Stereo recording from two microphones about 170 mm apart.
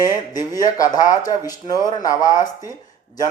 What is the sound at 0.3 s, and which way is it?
A man's voice, 25° left (ahead or behind).